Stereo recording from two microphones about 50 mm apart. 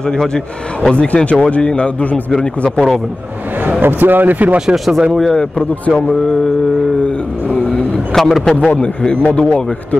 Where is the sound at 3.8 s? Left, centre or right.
Right.